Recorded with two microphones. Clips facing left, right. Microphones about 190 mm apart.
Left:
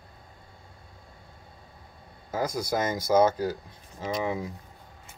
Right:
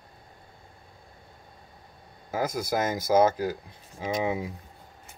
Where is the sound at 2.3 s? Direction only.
5° right (ahead or behind).